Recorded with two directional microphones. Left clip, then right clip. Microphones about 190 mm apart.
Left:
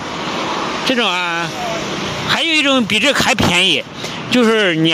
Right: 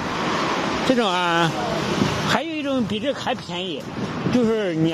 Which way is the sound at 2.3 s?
5° left (ahead or behind).